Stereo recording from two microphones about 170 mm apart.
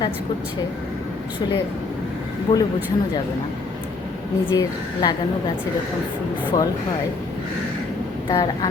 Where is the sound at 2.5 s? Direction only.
25° left (ahead or behind).